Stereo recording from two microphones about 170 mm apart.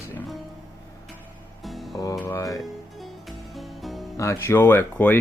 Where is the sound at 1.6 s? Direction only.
Centre (ahead or behind).